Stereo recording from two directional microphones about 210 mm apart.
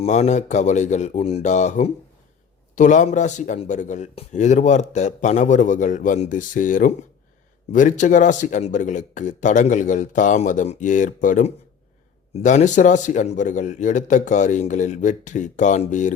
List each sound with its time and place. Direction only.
0.0 s speech: 35° left (ahead or behind)